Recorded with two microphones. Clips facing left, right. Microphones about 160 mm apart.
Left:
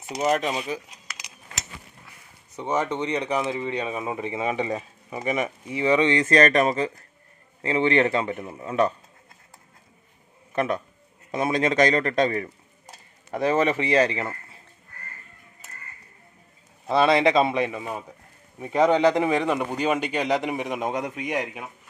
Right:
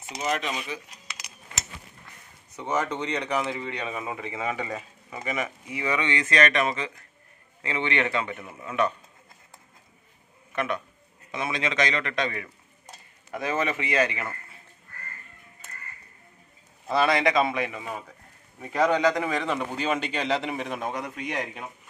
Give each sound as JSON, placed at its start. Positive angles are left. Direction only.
{"t": 0.2, "sound": "speech", "side_deg": 45}
{"t": 2.0, "sound": "speech", "side_deg": 15}
{"t": 10.5, "sound": "a man's voice", "side_deg": 35}
{"t": 16.8, "sound": "a man's voice", "side_deg": 25}